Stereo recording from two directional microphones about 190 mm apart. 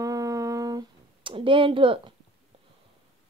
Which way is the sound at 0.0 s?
15° right (ahead or behind).